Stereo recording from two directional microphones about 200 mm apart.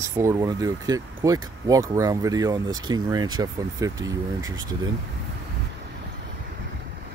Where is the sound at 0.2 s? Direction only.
20° right (ahead or behind).